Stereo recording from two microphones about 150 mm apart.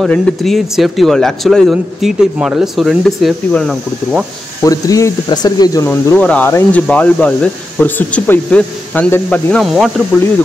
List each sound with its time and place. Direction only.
0.0 s speech: centre (ahead or behind)
4.6 s speech: 20° left (ahead or behind)
5.9 s speech: 10° left (ahead or behind)